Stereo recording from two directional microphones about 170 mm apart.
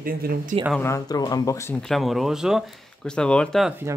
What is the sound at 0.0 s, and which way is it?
Speech, 60° right (ahead or behind).